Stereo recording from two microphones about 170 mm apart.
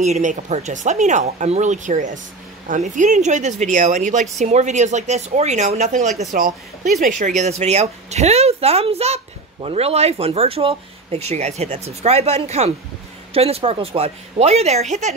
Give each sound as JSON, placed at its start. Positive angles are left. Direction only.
{"t": 0.0, "sound": "speech", "side_deg": -45}